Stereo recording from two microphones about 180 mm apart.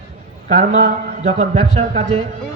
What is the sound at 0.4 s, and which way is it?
A man's voice, 45° right (ahead or behind).